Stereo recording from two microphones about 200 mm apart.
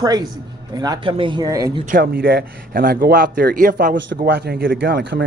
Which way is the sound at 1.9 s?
45° right (ahead or behind).